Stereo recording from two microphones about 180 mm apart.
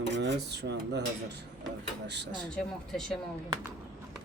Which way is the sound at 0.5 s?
70° right (ahead or behind).